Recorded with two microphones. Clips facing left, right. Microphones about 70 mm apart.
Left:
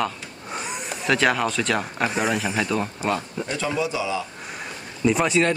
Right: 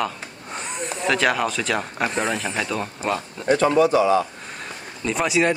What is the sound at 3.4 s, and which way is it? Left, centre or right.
Speech, right.